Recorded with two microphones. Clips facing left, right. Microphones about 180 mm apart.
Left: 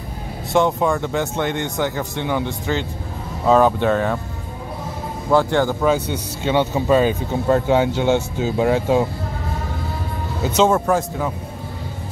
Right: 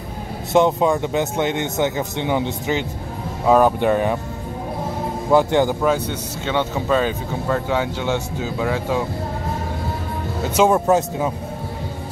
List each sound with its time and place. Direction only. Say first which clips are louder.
0.5 s speech: right 2 dB; 20° right (ahead or behind)
5.3 s speech: right 1 dB; 15° right (ahead or behind)
6.0 s speech: left 3 dB; 10° left (ahead or behind)
7.4 s speech: left 5 dB; 30° left (ahead or behind)
7.8 s speech: left 5 dB; 50° left (ahead or behind)
10.5 s speech: right 1 dB; 10° right (ahead or behind)